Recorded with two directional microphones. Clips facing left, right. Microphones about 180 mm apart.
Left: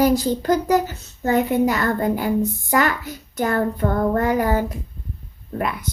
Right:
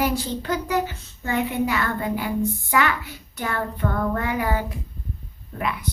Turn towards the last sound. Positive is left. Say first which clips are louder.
# left 3 dB
turn(degrees=45)  # may be behind; listen again after turning